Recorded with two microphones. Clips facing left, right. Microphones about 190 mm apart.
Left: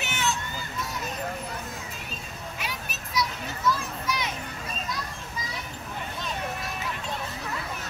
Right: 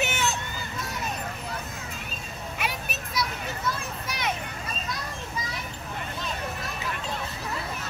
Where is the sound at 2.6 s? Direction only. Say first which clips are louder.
Right 6 dB; 60° right (ahead or behind).